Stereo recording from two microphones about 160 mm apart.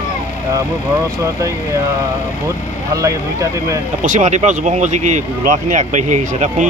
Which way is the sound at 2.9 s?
20° right (ahead or behind).